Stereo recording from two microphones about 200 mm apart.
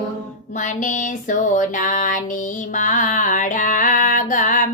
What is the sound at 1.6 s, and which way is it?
Music, 40° left (ahead or behind).